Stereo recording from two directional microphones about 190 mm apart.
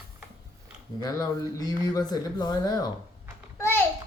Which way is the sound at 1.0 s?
20° left (ahead or behind).